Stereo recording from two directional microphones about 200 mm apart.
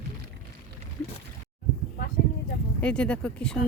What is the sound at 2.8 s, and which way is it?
Speech, 5° left (ahead or behind).